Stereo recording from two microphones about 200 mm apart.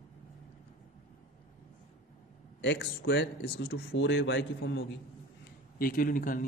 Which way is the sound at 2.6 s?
60° left (ahead or behind).